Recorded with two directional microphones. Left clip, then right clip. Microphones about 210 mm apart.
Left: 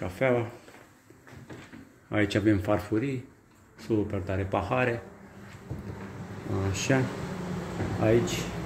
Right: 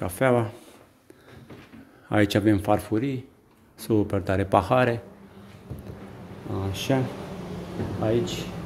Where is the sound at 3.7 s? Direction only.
30° right (ahead or behind).